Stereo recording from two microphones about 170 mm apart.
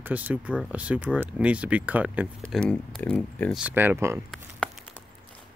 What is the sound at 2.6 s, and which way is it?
Speech, 5° left (ahead or behind).